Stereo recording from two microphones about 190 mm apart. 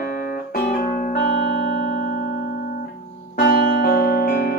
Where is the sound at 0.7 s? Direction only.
55° left (ahead or behind).